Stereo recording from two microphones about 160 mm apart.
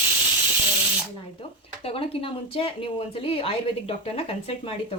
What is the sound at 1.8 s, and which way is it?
Speech, 35° left (ahead or behind).